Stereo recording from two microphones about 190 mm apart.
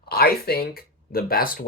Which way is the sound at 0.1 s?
55° left (ahead or behind).